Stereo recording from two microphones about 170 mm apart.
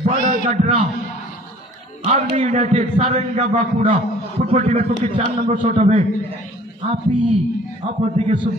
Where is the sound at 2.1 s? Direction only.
40° right (ahead or behind).